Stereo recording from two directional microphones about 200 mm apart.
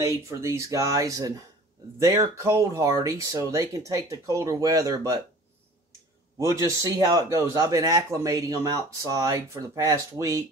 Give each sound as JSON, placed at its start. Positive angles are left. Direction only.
{"t": 0.0, "sound": "a man's voice", "side_deg": -15}
{"t": 6.3, "sound": "a man's voice", "side_deg": -15}